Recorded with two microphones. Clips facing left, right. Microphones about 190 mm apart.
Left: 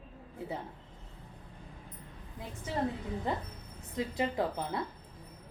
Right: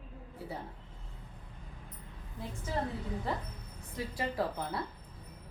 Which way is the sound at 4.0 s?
20° left (ahead or behind).